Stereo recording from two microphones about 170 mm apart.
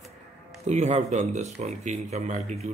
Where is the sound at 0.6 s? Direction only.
40° right (ahead or behind).